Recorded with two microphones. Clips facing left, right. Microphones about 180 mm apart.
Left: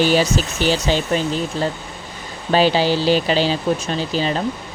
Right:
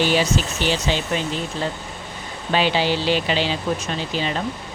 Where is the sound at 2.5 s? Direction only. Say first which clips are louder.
Left 4 dB; 40° left (ahead or behind).